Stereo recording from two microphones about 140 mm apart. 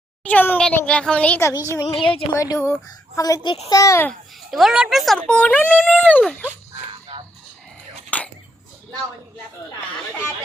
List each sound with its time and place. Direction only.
0.3 s speech: 10° left (ahead or behind)
1.8 s a woman's voice: 35° left (ahead or behind)
2.3 s a woman's voice: 20° left (ahead or behind)
4.5 s speech: centre (ahead or behind)
8.1 s a sound: 10° left (ahead or behind)